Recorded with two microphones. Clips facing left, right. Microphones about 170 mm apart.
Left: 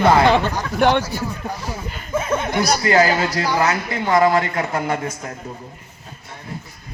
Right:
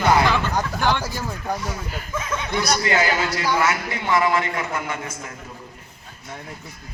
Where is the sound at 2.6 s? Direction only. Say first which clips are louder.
Left 5 dB; 35° left (ahead or behind).